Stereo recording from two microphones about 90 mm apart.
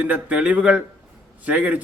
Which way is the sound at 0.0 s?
15° right (ahead or behind).